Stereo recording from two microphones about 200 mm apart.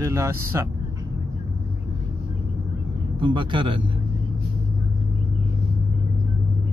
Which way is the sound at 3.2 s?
25° right (ahead or behind).